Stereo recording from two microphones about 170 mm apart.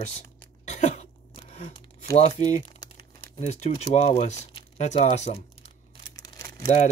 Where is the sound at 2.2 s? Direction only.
40° left (ahead or behind).